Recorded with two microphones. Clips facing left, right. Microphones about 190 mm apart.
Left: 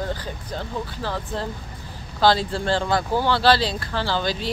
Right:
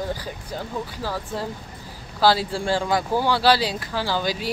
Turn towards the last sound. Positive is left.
turn(degrees=-10)  # may be behind; listen again after turning